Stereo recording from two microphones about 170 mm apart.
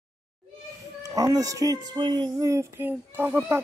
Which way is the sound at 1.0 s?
20° right (ahead or behind).